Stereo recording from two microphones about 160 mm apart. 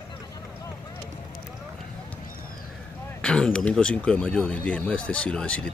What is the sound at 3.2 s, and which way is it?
Speech, 5° left (ahead or behind).